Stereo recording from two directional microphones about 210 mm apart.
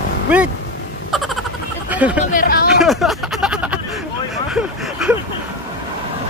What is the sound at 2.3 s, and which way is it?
Speech, 45° left (ahead or behind).